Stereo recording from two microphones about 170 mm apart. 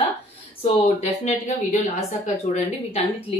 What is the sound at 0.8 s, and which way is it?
A woman's voice, 40° left (ahead or behind).